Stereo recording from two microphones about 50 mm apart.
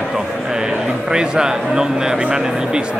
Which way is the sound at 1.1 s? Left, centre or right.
Centre.